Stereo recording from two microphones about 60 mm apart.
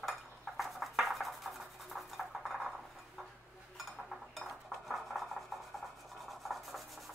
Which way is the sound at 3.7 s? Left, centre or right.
Centre.